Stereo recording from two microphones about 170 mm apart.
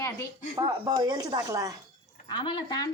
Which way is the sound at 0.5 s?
20° right (ahead or behind).